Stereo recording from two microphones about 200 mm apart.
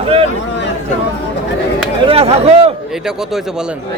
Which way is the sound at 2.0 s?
30° right (ahead or behind).